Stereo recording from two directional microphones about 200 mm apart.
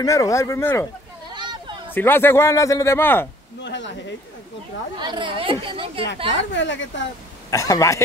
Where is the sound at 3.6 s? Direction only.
65° left (ahead or behind).